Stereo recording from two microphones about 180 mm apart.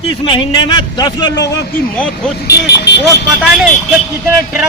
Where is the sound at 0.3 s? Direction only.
25° left (ahead or behind).